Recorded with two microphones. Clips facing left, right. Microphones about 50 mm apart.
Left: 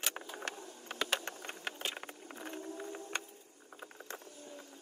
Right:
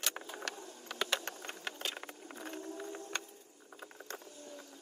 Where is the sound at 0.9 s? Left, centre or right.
Left.